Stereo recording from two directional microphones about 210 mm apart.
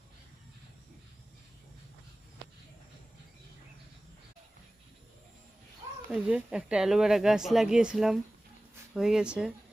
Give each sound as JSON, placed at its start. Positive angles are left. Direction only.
{"t": 6.1, "sound": "speech", "side_deg": -5}